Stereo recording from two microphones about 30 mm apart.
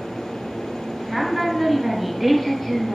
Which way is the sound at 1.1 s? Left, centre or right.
Centre.